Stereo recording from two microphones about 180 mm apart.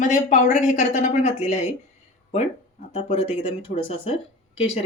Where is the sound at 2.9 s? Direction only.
30° left (ahead or behind).